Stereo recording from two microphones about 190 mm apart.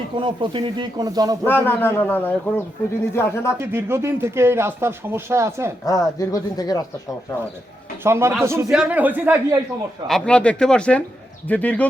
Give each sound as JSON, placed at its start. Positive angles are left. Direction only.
{"t": 0.2, "sound": "speech", "side_deg": -25}
{"t": 1.5, "sound": "a man's voice", "side_deg": 10}
{"t": 3.6, "sound": "speech", "side_deg": -10}
{"t": 5.8, "sound": "speech", "side_deg": 20}
{"t": 8.0, "sound": "speech", "side_deg": -15}
{"t": 10.1, "sound": "a man's voice", "side_deg": 5}